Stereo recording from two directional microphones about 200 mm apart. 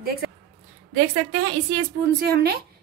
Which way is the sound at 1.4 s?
60° right (ahead or behind).